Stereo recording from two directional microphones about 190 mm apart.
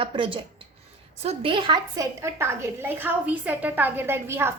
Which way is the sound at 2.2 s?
15° right (ahead or behind).